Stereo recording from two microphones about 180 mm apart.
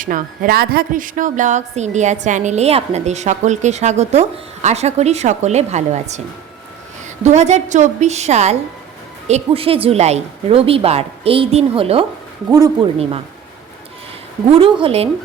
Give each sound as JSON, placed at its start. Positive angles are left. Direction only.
{"t": 0.0, "sound": "speech", "side_deg": -50}
{"t": 7.3, "sound": "speech", "side_deg": -40}
{"t": 12.5, "sound": "speech", "side_deg": -20}
{"t": 13.0, "sound": "speech", "side_deg": -35}
{"t": 14.5, "sound": "speech", "side_deg": -30}